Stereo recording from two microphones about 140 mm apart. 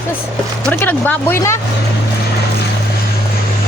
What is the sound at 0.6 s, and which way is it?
Speech, 15° left (ahead or behind).